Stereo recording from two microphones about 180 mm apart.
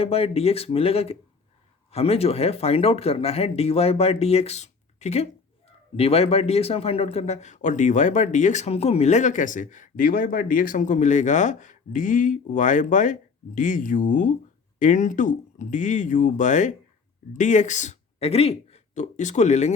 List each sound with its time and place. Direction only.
0.0 s speech: 35° left (ahead or behind)